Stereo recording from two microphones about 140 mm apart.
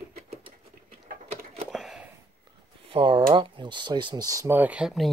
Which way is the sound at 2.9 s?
40° right (ahead or behind).